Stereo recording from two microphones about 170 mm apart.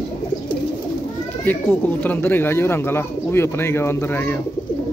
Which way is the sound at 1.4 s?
10° left (ahead or behind).